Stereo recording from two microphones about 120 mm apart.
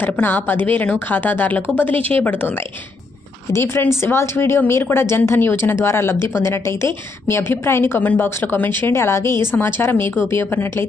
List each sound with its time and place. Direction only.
0.0 s a woman's voice: 15° left (ahead or behind)
3.5 s a woman's voice: 20° left (ahead or behind)